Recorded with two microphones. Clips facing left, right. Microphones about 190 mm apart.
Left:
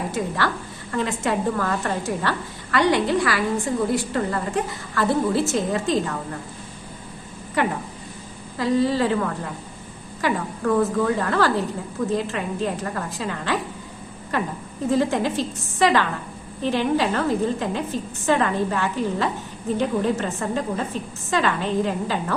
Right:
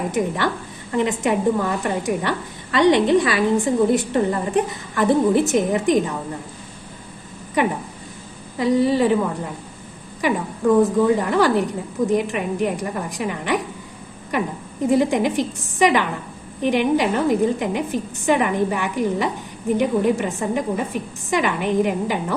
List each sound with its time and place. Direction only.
0.1 s a woman's voice: 20° right (ahead or behind)
8.5 s a woman's voice: 15° right (ahead or behind)